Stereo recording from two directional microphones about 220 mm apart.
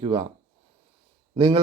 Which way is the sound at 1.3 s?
20° right (ahead or behind).